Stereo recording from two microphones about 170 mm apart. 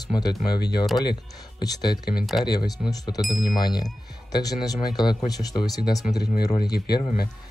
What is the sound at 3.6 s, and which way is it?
Speech, 25° left (ahead or behind).